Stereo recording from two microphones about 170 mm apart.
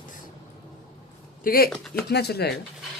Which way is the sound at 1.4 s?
60° left (ahead or behind).